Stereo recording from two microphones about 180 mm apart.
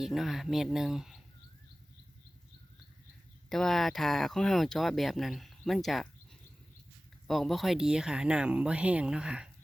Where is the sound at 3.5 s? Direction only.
Centre (ahead or behind).